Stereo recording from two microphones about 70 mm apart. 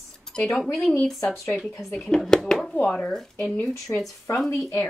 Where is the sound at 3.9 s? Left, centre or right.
Left.